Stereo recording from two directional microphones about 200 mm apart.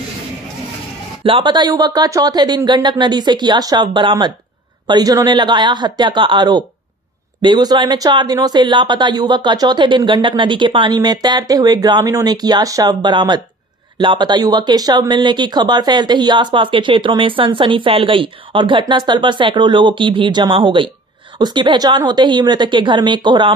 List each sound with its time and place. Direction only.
1.2 s speech: 25° right (ahead or behind)